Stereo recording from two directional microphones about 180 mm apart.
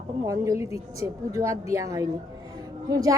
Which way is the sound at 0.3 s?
20° right (ahead or behind).